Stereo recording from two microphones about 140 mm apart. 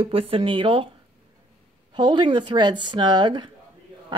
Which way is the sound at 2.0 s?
35° right (ahead or behind).